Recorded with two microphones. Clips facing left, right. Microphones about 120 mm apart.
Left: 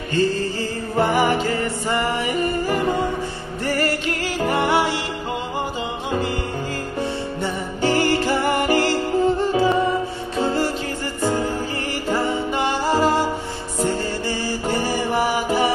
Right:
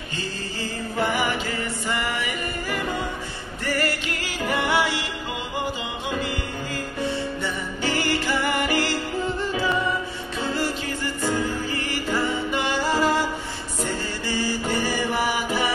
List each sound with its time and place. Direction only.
0.1 s music: 40° left (ahead or behind)
7.4 s music: 40° left (ahead or behind)